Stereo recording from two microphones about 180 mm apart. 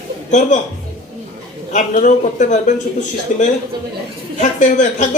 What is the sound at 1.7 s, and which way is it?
A man's voice, 45° left (ahead or behind).